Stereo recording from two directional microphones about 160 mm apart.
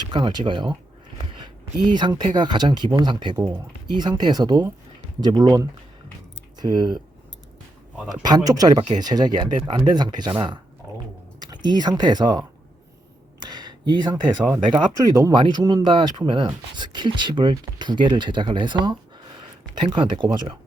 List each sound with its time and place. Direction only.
0.1 s speech: 30° right (ahead or behind)
1.9 s speech: 30° right (ahead or behind)
3.3 s speech: 15° right (ahead or behind)
3.8 s speech: 25° right (ahead or behind)
8.1 s speech: 25° right (ahead or behind)
11.3 s speech: 25° right (ahead or behind)
13.5 s a sound: 25° right (ahead or behind)
14.7 s speech: 20° right (ahead or behind)